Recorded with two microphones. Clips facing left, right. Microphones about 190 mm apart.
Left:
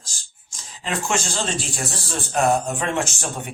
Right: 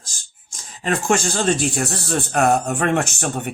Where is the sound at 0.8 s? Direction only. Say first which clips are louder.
Right 5 dB; 50° right (ahead or behind).